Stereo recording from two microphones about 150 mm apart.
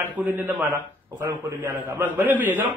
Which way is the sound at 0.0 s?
10° right (ahead or behind).